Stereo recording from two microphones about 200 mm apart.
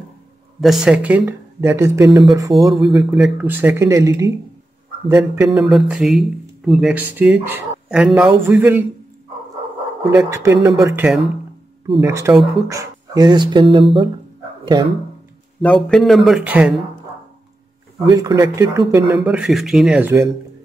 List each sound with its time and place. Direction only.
0.6 s speech: centre (ahead or behind); by 2.5 s 15° right (ahead or behind)
2.5 s speech: centre (ahead or behind)
10.1 s speech: 10° right (ahead or behind)
15.6 s speech: 5° left (ahead or behind)
18.0 s speech: 15° right (ahead or behind)
19.1 s speech: 5° right (ahead or behind)